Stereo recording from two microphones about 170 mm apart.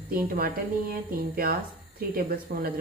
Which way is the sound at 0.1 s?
60° right (ahead or behind).